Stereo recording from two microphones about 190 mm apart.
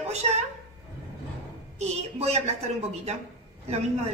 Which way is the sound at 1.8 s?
35° right (ahead or behind).